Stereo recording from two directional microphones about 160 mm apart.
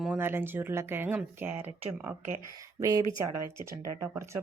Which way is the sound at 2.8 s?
20° right (ahead or behind).